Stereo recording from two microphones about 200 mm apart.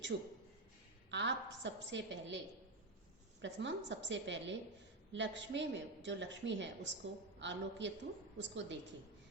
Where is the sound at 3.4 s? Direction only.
65° right (ahead or behind).